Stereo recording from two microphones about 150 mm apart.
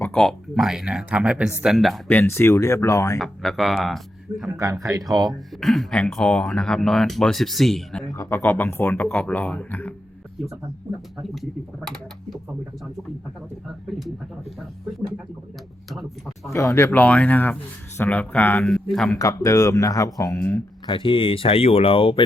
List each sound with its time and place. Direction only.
0.0 s speech: 5° left (ahead or behind)
2.0 s speech: 15° left (ahead or behind)
3.2 s speech: centre (ahead or behind)
4.5 s speech: 20° right (ahead or behind)
5.3 s speech: centre (ahead or behind)
8.1 s speech: 20° left (ahead or behind)
11.2 s speech: centre (ahead or behind)
13.9 s speech: centre (ahead or behind)
15.9 s speech: centre (ahead or behind)
16.5 s speech: 20° left (ahead or behind)
18.6 s speech: centre (ahead or behind)
19.2 s speech: 20° left (ahead or behind)